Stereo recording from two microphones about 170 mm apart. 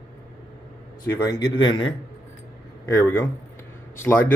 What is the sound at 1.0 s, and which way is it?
Speech, 20° left (ahead or behind).